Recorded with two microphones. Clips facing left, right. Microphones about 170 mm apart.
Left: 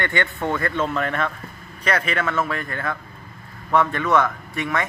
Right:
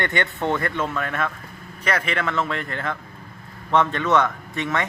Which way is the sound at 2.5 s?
25° right (ahead or behind).